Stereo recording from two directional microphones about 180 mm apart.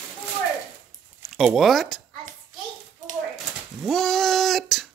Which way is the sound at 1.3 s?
Centre (ahead or behind).